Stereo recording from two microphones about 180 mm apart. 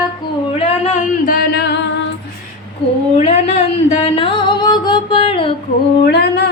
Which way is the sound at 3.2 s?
35° left (ahead or behind).